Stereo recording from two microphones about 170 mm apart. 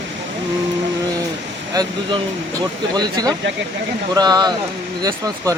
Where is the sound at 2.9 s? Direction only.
25° right (ahead or behind).